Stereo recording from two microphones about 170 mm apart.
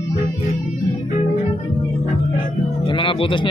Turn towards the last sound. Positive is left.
turn(degrees=30)  # may be behind; listen again after turning